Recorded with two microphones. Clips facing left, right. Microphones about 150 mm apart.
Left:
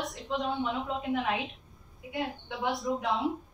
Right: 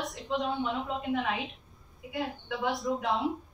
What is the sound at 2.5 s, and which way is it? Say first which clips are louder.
Speech: right 1 dB; centre (ahead or behind).